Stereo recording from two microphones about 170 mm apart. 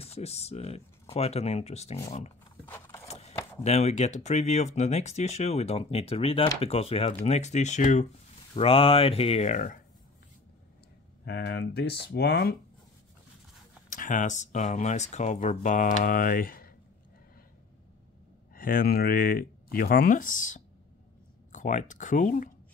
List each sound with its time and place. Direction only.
0.0 s speech: 40° left (ahead or behind)
2.5 s vehicle: 10° left (ahead or behind)
3.1 s keys jangling: 40° left (ahead or behind)
3.6 s speech: 40° left (ahead or behind)
8.5 s speech: 35° left (ahead or behind)
11.2 s speech: 75° left (ahead or behind)
13.8 s speech: 50° left (ahead or behind)
18.5 s speech: 55° left (ahead or behind)